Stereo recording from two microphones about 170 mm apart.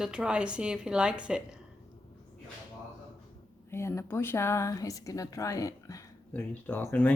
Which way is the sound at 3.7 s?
15° left (ahead or behind).